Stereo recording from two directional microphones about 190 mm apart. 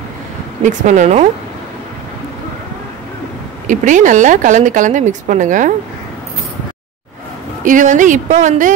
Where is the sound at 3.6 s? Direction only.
40° right (ahead or behind).